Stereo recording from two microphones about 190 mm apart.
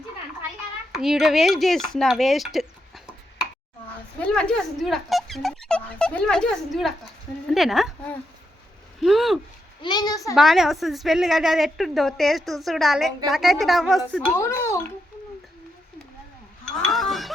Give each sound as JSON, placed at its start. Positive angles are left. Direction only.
{"t": 0.9, "sound": "a woman's voice", "side_deg": 0}
{"t": 4.2, "sound": "a woman's voice", "side_deg": 5}
{"t": 9.8, "sound": "a child's voice", "side_deg": 20}
{"t": 10.3, "sound": "a woman's voice", "side_deg": 0}
{"t": 14.3, "sound": "a child's voice", "side_deg": 15}
{"t": 16.8, "sound": "speech", "side_deg": 0}